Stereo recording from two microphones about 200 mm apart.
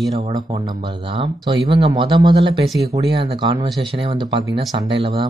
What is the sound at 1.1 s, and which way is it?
Speech, 25° right (ahead or behind).